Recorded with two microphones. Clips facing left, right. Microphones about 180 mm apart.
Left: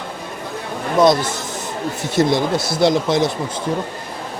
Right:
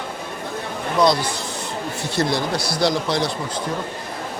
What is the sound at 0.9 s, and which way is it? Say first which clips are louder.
Speech: left 4 dB; 20° left (ahead or behind).